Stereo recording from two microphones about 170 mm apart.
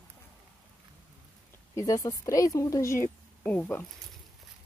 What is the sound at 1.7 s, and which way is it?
Speech, 20° left (ahead or behind).